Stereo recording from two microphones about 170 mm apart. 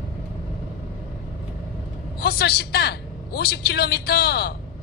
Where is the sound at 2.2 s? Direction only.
70° left (ahead or behind).